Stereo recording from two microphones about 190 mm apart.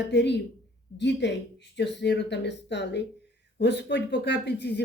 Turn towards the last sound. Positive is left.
turn(degrees=65)  # may be behind; listen again after turning